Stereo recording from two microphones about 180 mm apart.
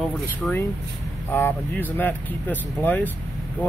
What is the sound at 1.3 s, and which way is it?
Speech, 10° left (ahead or behind).